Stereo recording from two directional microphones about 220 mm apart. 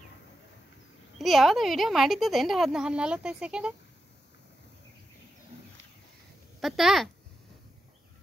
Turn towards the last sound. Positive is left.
turn(degrees=0)  # may be behind; listen again after turning